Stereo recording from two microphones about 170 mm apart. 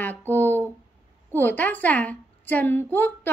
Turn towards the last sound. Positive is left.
turn(degrees=10)  # may be behind; listen again after turning